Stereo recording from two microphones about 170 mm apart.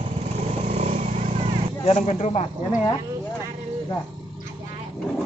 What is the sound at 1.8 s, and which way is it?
Speech, 40° left (ahead or behind).